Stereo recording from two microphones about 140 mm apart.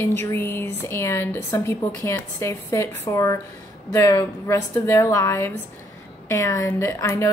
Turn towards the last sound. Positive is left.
turn(degrees=20)  # may be behind; listen again after turning